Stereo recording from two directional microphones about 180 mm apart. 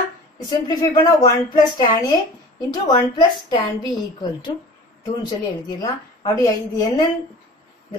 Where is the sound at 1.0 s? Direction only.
20° left (ahead or behind).